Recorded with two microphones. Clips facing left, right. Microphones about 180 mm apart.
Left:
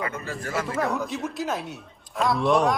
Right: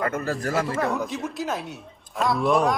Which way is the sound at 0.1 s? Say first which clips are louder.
Right 6 dB; 40° right (ahead or behind).